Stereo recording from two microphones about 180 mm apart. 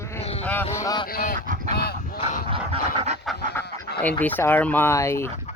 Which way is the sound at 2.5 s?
30° right (ahead or behind).